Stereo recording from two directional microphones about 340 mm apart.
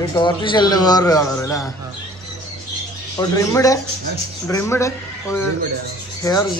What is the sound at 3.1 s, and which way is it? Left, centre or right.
A man's voice, centre.